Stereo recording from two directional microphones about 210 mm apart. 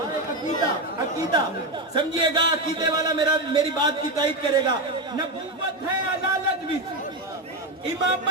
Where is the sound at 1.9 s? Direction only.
20° right (ahead or behind).